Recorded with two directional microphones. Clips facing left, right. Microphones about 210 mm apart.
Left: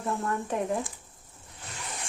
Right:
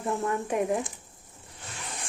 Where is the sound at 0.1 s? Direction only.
15° right (ahead or behind).